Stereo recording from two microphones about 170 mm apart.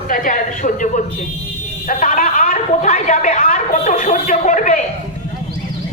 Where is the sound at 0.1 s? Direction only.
50° left (ahead or behind).